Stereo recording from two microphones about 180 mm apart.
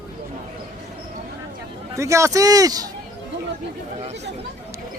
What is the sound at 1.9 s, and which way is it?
Speech, 15° right (ahead or behind).